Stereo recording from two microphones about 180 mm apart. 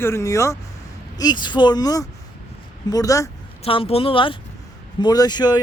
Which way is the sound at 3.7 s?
30° left (ahead or behind).